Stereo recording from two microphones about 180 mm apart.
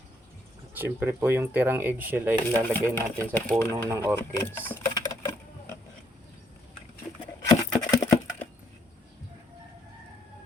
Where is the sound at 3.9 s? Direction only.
10° right (ahead or behind).